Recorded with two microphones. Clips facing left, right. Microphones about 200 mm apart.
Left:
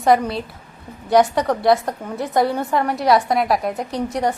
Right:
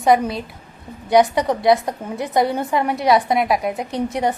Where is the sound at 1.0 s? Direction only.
Centre (ahead or behind).